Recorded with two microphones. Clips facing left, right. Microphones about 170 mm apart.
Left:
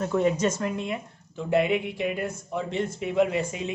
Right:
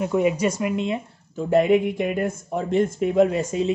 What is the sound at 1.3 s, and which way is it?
Speech, 45° right (ahead or behind).